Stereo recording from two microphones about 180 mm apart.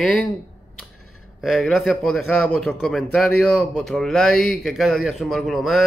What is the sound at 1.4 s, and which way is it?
A man's voice, centre (ahead or behind).